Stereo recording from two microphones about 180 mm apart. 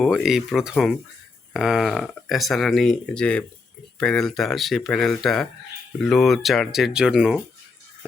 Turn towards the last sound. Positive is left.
turn(degrees=0)  # may be behind; listen again after turning